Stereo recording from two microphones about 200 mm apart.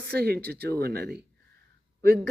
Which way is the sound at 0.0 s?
55° right (ahead or behind).